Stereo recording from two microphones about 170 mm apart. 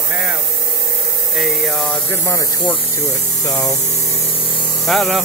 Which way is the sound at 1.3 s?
Centre (ahead or behind).